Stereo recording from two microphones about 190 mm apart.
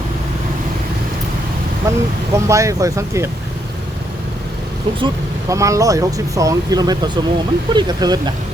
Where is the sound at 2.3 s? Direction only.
15° right (ahead or behind).